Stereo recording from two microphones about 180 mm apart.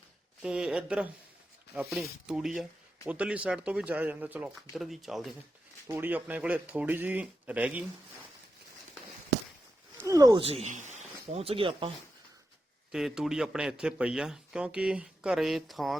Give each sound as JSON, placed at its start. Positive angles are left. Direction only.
{"t": 0.4, "sound": "speech", "side_deg": -5}
{"t": 10.0, "sound": "speech", "side_deg": -20}
{"t": 12.9, "sound": "speech", "side_deg": -5}